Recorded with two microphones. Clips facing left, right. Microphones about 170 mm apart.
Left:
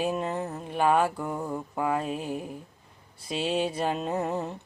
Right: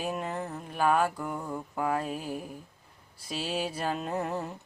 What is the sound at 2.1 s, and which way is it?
Music, 25° left (ahead or behind).